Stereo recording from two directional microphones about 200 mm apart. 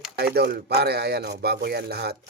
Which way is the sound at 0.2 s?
55° right (ahead or behind).